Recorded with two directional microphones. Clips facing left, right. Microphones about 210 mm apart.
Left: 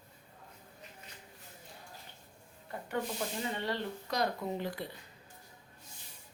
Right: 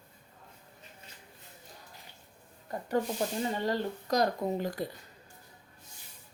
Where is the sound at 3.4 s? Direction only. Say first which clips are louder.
Right 5 dB; 40° right (ahead or behind).